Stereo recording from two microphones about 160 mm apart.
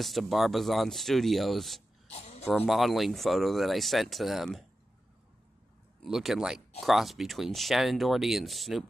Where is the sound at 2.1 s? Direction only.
40° left (ahead or behind).